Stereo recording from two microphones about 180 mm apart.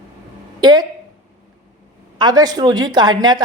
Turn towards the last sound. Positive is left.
turn(degrees=-25)  # may be behind; listen again after turning